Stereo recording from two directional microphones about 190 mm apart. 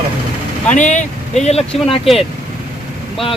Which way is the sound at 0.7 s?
40° left (ahead or behind).